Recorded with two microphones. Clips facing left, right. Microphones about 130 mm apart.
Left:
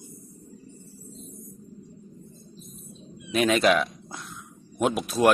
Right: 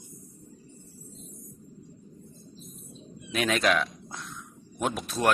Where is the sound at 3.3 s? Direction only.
Centre (ahead or behind).